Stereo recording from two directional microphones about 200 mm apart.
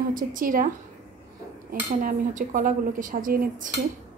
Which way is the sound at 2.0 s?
40° right (ahead or behind).